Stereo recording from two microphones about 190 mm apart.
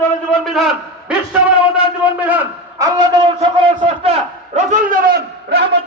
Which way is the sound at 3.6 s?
30° right (ahead or behind).